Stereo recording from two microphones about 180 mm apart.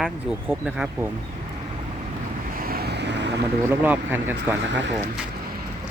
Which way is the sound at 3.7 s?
10° right (ahead or behind).